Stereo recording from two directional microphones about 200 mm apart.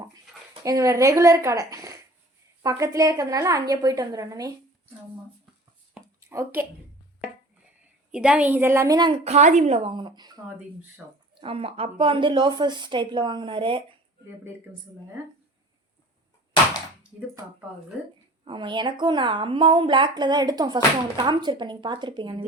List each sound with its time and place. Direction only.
0.6 s a woman's voice: 15° right (ahead or behind)
5.9 s a sound: 15° right (ahead or behind)
8.1 s a woman's voice: 5° right (ahead or behind)
9.2 s a woman's voice: 35° right (ahead or behind)
18.0 s a woman's voice: 5° right (ahead or behind)
18.4 s a woman's voice: 25° right (ahead or behind)